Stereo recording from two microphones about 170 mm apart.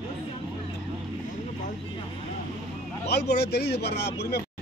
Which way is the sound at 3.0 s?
75° left (ahead or behind).